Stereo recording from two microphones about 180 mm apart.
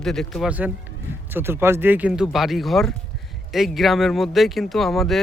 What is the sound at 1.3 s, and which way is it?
A man's voice, 10° right (ahead or behind).